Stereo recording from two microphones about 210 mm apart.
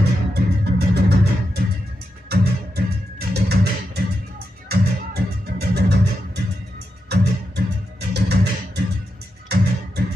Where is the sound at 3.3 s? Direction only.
50° right (ahead or behind).